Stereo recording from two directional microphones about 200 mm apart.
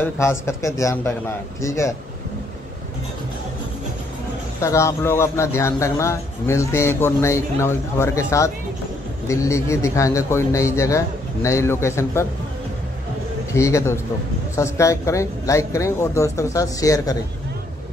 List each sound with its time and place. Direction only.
0.2 s a man's voice: 15° left (ahead or behind)
4.6 s a man's voice: 15° left (ahead or behind)
13.5 s a man's voice: 15° left (ahead or behind)